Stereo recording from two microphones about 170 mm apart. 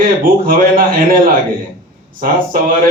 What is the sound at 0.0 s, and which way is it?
A man's voice, 55° right (ahead or behind).